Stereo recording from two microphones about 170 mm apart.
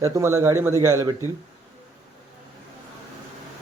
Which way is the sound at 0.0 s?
15° right (ahead or behind).